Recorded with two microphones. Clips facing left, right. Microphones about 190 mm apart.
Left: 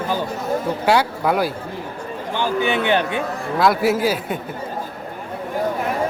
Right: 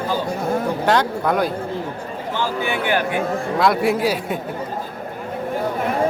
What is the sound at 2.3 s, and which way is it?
Speech, 15° left (ahead or behind).